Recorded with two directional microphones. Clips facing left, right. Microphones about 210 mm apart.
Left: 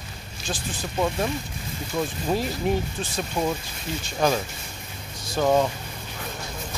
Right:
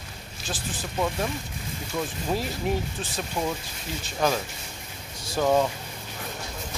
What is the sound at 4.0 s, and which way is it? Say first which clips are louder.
Speech: left 2 dB; centre (ahead or behind).